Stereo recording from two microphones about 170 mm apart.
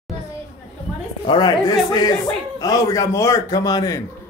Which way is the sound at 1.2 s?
25° left (ahead or behind).